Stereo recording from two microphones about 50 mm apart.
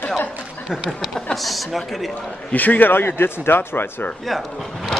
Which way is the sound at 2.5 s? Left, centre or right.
Left.